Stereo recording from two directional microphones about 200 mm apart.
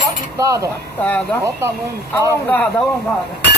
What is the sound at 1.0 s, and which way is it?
Speech, 5° left (ahead or behind).